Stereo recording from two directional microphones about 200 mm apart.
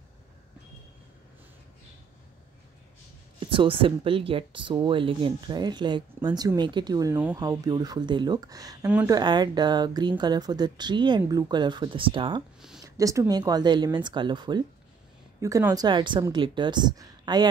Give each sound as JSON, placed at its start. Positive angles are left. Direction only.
{"t": 3.3, "sound": "speech", "side_deg": -25}
{"t": 8.8, "sound": "speech", "side_deg": -5}
{"t": 9.1, "sound": "speech", "side_deg": -20}